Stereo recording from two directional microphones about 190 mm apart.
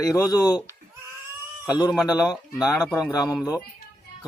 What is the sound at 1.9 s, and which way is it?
Speech, centre (ahead or behind).